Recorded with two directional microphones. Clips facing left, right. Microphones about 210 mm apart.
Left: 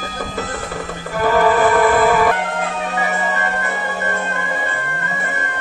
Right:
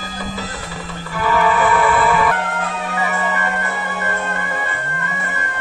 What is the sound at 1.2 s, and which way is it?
Music, 40° left (ahead or behind).